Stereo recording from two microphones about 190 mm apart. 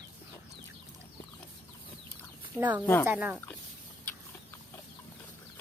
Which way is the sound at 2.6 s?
10° right (ahead or behind).